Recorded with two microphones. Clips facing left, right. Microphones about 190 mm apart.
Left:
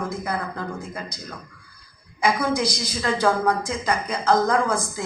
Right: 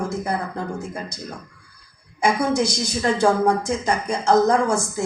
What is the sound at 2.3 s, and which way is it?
A woman's voice, 25° right (ahead or behind).